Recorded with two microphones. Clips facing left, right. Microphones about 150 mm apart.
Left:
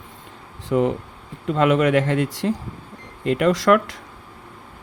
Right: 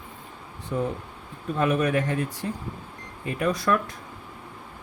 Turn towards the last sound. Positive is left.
turn(degrees=90)